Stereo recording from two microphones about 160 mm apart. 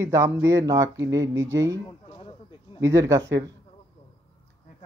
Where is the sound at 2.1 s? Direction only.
35° left (ahead or behind).